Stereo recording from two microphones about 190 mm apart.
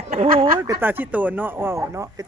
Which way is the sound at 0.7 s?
10° right (ahead or behind).